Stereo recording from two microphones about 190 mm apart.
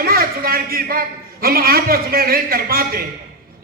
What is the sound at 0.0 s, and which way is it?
A man's voice, 50° right (ahead or behind).